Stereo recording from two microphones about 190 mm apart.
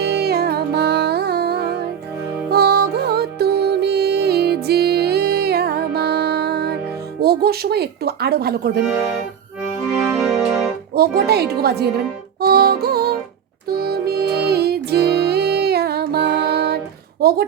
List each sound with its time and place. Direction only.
0.0 s music: 60° right (ahead or behind)
7.2 s speech: 55° right (ahead or behind)
8.8 s speech: 5° right (ahead or behind)
10.2 s organ: 5° right (ahead or behind)
10.9 s speech: 55° right (ahead or behind)
12.4 s music: 55° right (ahead or behind)